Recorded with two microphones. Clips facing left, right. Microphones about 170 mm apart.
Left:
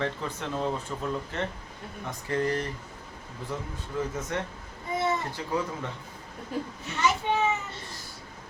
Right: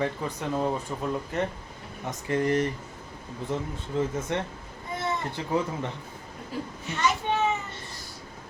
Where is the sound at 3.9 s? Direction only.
25° right (ahead or behind).